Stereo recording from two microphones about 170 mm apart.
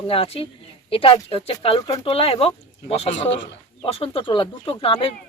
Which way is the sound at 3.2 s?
90° left.